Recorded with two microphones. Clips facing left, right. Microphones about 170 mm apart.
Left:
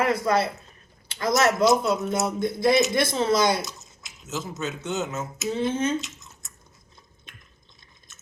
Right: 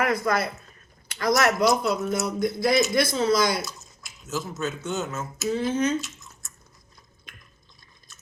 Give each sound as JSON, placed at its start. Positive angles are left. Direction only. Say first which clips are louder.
{"t": 0.0, "sound": "speech", "louder": "left 2 dB", "side_deg": 25}
{"t": 8.1, "sound": "drip", "louder": "right 3 dB", "side_deg": 20}